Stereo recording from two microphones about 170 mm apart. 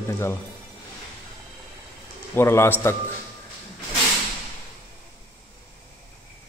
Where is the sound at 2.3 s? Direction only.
15° left (ahead or behind).